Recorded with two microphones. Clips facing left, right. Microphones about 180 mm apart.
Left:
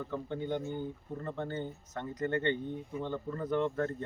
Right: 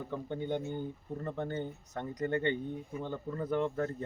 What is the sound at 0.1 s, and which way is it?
Speech, 15° right (ahead or behind).